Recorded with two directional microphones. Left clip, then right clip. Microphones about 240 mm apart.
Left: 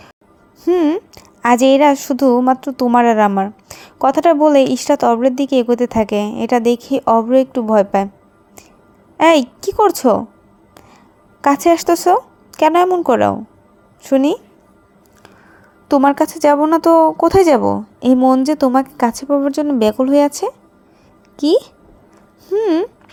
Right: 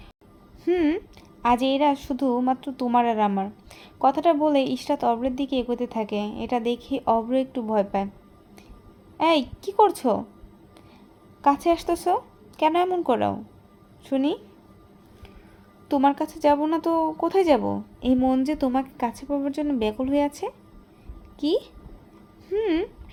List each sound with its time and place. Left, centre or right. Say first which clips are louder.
0.6 s a woman's voice: left 8 dB; centre
9.1 s a woman's voice: left 10 dB; left
11.4 s a woman's voice: left 9 dB; centre
15.9 s a woman's voice: left 9 dB; left